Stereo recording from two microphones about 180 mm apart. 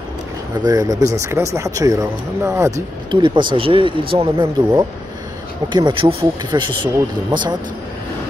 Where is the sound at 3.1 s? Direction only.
25° right (ahead or behind).